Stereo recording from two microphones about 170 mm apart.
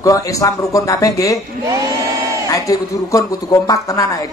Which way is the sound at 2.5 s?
20° left (ahead or behind).